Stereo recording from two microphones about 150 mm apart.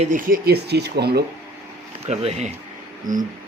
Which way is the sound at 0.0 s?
65° right (ahead or behind).